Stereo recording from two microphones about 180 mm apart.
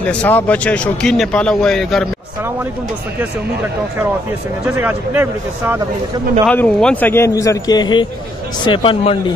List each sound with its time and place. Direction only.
0.0 s speech: 5° left (ahead or behind)
4.7 s speech: 10° right (ahead or behind)
6.4 s a man's voice: 5° left (ahead or behind); by 9.1 s 30° left (ahead or behind)